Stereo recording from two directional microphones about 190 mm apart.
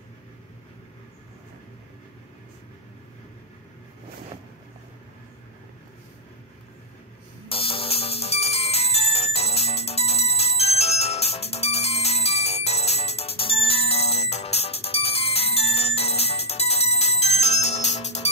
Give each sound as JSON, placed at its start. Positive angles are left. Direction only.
{"t": 7.4, "sound": "ringtone", "side_deg": 30}